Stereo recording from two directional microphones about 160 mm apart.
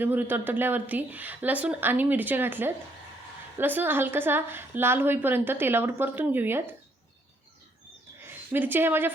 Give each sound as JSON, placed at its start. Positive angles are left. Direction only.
{"t": 0.0, "sound": "a woman's voice", "side_deg": -10}
{"t": 8.3, "sound": "a woman's voice", "side_deg": -10}